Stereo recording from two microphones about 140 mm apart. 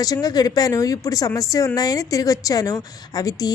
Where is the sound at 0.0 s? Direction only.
25° left (ahead or behind).